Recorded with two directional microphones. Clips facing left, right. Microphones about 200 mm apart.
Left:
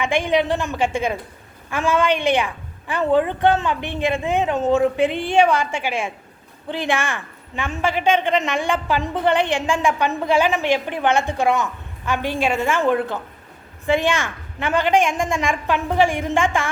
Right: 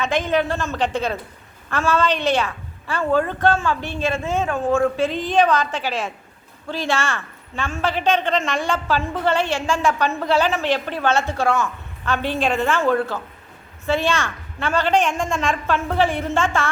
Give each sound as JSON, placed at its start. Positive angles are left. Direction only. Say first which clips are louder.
{"t": 0.0, "sound": "a woman's voice", "louder": "left 1 dB", "side_deg": 15}